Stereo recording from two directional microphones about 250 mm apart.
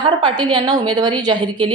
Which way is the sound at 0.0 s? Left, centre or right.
Centre.